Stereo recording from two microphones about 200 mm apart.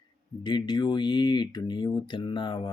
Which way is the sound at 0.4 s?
20° left (ahead or behind).